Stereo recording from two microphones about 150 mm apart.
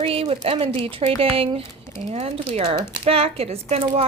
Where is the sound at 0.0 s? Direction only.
40° right (ahead or behind).